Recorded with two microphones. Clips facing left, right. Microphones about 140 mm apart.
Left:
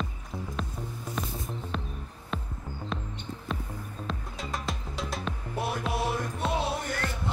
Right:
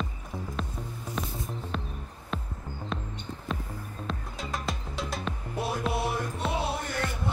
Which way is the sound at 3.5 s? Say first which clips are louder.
Right 1 dB; centre (ahead or behind).